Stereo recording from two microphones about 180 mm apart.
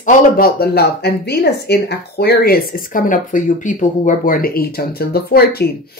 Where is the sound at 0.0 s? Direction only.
55° left (ahead or behind).